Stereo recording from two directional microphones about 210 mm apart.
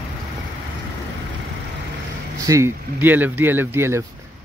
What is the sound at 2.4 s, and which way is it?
Speech, 15° right (ahead or behind).